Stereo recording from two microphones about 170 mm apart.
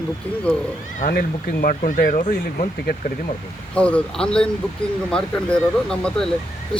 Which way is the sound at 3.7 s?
5° left (ahead or behind).